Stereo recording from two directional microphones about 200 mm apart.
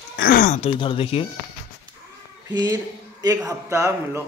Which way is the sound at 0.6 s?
25° left (ahead or behind).